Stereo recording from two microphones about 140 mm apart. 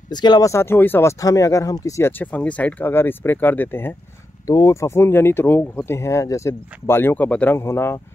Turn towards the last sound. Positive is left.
turn(degrees=20)  # may be behind; listen again after turning